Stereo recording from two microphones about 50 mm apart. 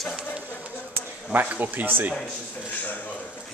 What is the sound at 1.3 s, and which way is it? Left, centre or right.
Speech, right.